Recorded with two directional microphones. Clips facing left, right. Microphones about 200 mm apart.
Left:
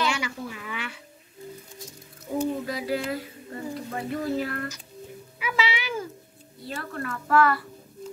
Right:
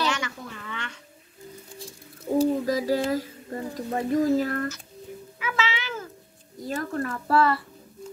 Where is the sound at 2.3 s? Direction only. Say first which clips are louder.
Right 5 dB; 40° right (ahead or behind).